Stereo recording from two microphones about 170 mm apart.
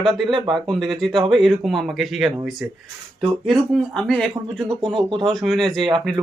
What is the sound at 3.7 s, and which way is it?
Speech, 5° left (ahead or behind).